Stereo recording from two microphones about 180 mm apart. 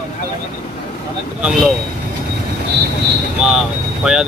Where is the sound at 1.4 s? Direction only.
5° right (ahead or behind).